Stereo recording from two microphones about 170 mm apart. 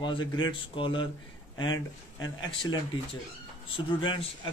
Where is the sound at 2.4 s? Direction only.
25° left (ahead or behind).